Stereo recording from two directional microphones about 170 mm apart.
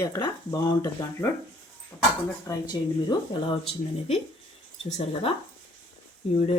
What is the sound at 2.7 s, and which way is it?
Speech, 25° left (ahead or behind).